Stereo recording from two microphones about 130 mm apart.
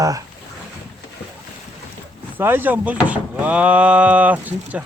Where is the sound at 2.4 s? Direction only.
15° right (ahead or behind).